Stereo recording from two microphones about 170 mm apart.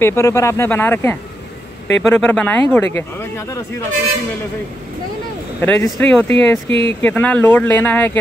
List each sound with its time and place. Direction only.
0.0 s speech: 15° left (ahead or behind)
5.6 s speech: 10° left (ahead or behind)
6.7 s speech: 30° right (ahead or behind)
7.0 s speech: 10° left (ahead or behind)